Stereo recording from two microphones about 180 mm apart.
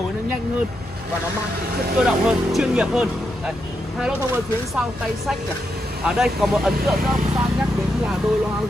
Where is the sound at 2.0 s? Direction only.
5° right (ahead or behind).